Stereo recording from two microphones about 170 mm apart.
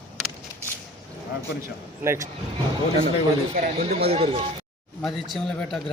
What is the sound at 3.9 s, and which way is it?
Speech, 35° right (ahead or behind).